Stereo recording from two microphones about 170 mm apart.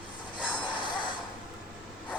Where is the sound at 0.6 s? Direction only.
25° left (ahead or behind).